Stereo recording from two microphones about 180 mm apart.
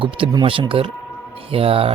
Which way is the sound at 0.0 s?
30° right (ahead or behind).